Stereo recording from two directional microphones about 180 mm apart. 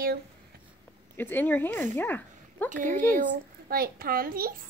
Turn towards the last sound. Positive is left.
turn(degrees=-55)  # may be behind; listen again after turning